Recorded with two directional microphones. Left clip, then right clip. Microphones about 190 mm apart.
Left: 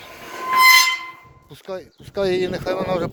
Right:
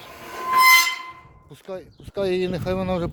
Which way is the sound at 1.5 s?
5° right (ahead or behind).